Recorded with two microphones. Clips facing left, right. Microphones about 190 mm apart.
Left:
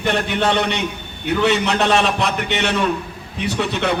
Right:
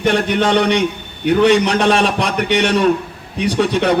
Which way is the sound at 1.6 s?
45° right (ahead or behind).